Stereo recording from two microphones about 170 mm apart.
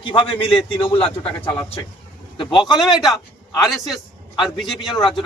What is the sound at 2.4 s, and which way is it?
Speech, 30° left (ahead or behind).